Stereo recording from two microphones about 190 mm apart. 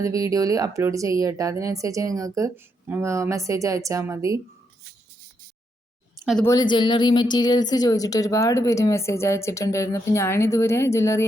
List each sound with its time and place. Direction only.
0.0 s speech: 15° right (ahead or behind)
6.4 s speech: 20° left (ahead or behind)